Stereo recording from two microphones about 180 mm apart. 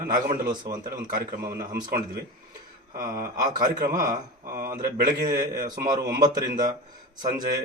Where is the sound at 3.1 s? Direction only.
50° right (ahead or behind).